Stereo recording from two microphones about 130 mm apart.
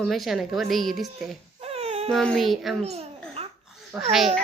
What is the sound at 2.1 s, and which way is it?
Speech, centre (ahead or behind).